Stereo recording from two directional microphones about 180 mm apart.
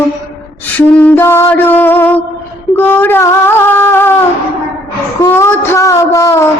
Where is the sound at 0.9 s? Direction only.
10° left (ahead or behind).